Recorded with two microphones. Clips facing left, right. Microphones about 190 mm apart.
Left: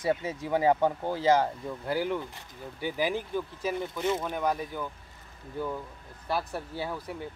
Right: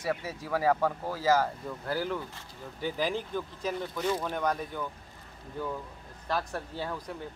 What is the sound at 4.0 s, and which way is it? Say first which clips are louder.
Speech: left 1 dB; 25° left (ahead or behind).